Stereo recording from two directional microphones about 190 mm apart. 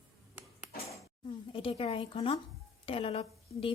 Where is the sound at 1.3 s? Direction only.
30° left (ahead or behind).